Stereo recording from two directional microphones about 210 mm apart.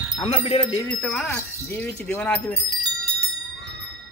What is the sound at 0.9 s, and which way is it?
Speech, 5° left (ahead or behind).